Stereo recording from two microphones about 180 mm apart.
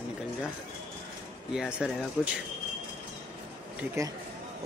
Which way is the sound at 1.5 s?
5° right (ahead or behind).